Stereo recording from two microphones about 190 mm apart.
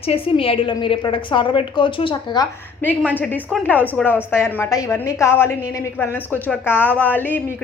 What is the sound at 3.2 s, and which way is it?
A woman's voice, 10° left (ahead or behind).